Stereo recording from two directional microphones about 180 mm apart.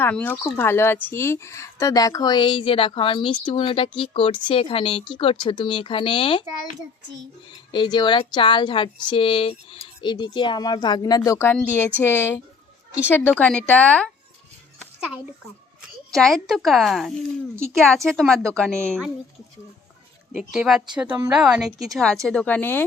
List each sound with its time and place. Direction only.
0.0 s a woman's voice: 10° left (ahead or behind); by 6.4 s 30° left (ahead or behind)
7.7 s a woman's voice: 25° left (ahead or behind); by 14.1 s 5° left (ahead or behind)
16.1 s speech: centre (ahead or behind)
17.5 s speech: 15° right (ahead or behind)
17.7 s speech: centre (ahead or behind)
20.3 s speech: centre (ahead or behind)